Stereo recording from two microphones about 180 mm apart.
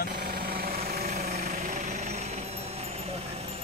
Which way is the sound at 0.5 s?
55° right (ahead or behind).